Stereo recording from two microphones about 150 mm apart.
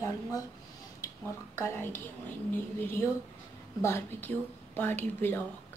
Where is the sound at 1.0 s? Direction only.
15° left (ahead or behind).